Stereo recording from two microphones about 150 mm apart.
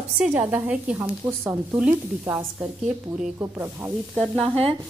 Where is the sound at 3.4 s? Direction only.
15° right (ahead or behind).